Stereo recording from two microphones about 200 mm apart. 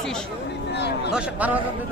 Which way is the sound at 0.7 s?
55° left (ahead or behind).